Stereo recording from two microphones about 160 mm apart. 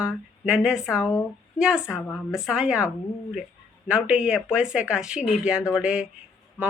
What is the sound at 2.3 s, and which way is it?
Speech, 5° right (ahead or behind).